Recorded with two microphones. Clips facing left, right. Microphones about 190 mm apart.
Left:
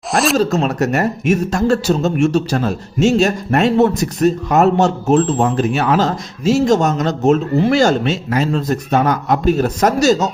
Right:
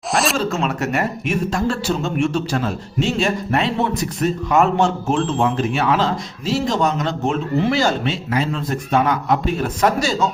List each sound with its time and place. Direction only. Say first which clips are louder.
0.1 s speech: left 4 dB; centre (ahead or behind)
0.3 s a man's voice: left 6 dB; 40° left (ahead or behind)